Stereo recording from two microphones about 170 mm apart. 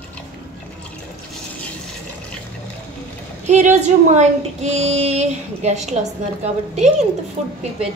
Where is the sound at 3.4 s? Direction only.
45° right (ahead or behind).